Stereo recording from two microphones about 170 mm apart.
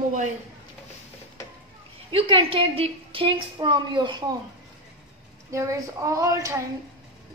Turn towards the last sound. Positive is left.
turn(degrees=-20)  # may be behind; listen again after turning